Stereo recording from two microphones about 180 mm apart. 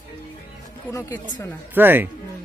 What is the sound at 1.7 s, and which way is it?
Speech, 10° right (ahead or behind).